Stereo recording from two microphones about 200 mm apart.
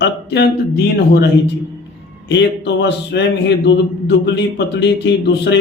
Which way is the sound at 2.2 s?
60° left (ahead or behind).